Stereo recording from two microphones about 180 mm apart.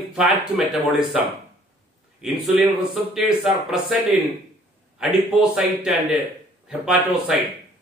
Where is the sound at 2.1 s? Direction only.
Centre (ahead or behind).